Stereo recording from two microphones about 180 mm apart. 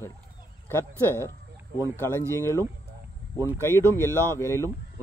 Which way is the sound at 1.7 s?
15° right (ahead or behind).